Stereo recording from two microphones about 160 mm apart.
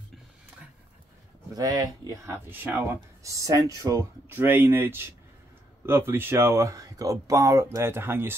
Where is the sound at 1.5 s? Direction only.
25° right (ahead or behind).